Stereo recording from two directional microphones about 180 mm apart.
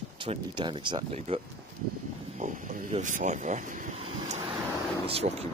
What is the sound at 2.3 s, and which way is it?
Speech, 45° right (ahead or behind).